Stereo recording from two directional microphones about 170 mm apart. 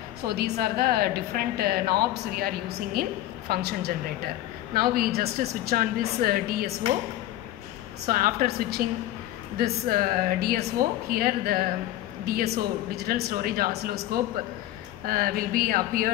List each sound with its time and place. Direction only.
0.3 s a woman's voice: 65° right (ahead or behind)
8.1 s a woman's voice: 60° right (ahead or behind)
12.9 s a woman's voice: 65° right (ahead or behind)